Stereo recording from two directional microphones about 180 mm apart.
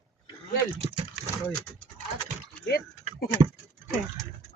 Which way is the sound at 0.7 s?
30° right (ahead or behind).